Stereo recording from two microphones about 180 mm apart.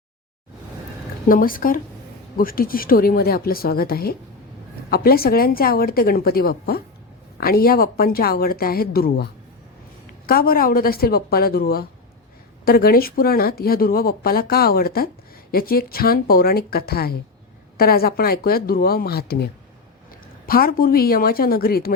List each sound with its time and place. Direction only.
1.3 s a woman's voice: 50° left (ahead or behind)
10.2 s a woman's voice: 55° left (ahead or behind)